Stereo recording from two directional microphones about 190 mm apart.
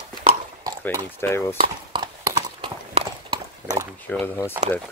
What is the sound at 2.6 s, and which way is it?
Clip-clop, 25° right (ahead or behind).